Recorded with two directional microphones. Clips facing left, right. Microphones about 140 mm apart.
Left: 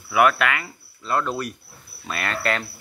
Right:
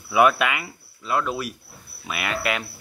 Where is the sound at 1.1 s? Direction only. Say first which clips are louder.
Left 1 dB; 5° right (ahead or behind).